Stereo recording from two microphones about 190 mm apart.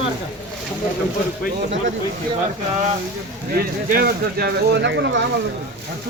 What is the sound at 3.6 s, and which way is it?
Speech, 55° right (ahead or behind).